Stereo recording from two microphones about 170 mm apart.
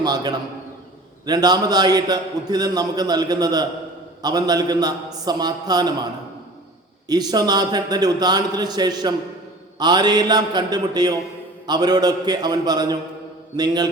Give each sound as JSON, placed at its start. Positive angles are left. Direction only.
{"t": 0.0, "sound": "a man's voice", "side_deg": -25}
{"t": 7.1, "sound": "a man's voice", "side_deg": -25}